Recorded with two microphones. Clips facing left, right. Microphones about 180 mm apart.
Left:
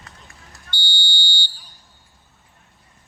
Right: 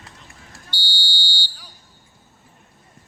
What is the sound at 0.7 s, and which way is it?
Fire alarm, 50° left (ahead or behind).